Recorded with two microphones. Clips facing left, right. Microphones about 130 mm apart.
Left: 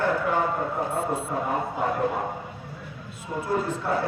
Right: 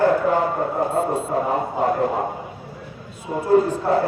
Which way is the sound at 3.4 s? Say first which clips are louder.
Right 10 dB; 40° right (ahead or behind).